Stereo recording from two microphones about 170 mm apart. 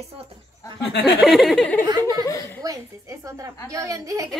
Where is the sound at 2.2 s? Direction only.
20° left (ahead or behind).